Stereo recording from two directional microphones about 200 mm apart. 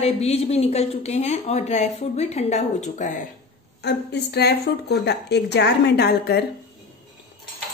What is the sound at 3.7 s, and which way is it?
A woman's voice, 55° left (ahead or behind).